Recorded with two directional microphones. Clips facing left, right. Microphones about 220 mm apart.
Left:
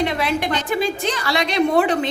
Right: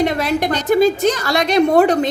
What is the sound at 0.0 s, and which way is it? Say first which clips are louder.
A woman's voice: right 4 dB; 40° right (ahead or behind).